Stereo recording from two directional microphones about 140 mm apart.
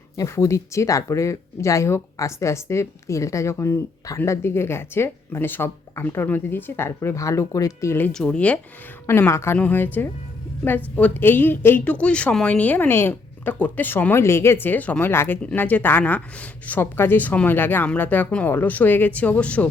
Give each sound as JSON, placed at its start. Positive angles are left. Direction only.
{"t": 0.2, "sound": "speech", "side_deg": 20}
{"t": 8.1, "sound": "a woman's voice", "side_deg": 5}